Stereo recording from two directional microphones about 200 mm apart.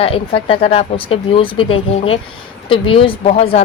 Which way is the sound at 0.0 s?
30° left (ahead or behind).